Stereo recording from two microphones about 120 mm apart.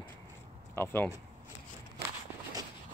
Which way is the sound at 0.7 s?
20° left (ahead or behind).